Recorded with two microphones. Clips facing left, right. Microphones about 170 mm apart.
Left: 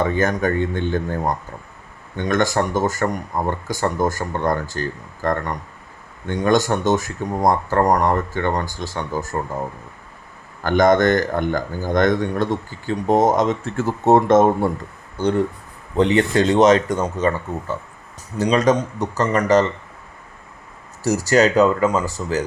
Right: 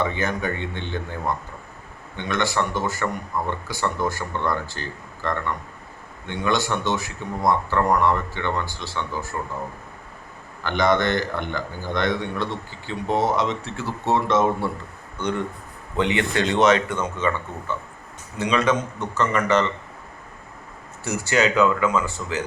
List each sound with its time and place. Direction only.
0.0 s a man's voice: 45° left (ahead or behind)
10.6 s a man's voice: 45° left (ahead or behind)
15.2 s speech: 35° left (ahead or behind)
21.0 s speech: 40° left (ahead or behind)